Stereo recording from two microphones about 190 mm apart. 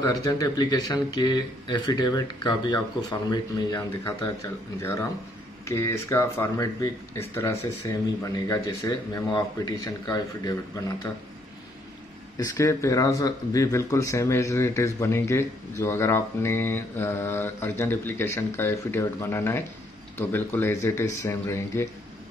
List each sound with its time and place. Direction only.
0.0 s speech: 20° left (ahead or behind)
5.7 s speech: 15° left (ahead or behind)
12.4 s speech: 15° left (ahead or behind)